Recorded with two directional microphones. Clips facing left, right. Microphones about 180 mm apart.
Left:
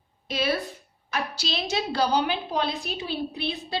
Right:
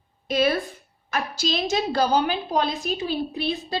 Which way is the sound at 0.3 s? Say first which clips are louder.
Right 5 dB; 50° right (ahead or behind).